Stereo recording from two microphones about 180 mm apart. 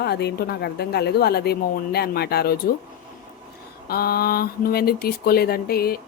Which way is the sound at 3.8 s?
60° left (ahead or behind).